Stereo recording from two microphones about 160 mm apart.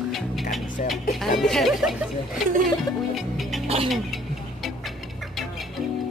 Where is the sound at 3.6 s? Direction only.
40° right (ahead or behind).